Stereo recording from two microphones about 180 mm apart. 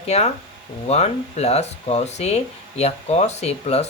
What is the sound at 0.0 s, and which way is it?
Speech, 35° left (ahead or behind).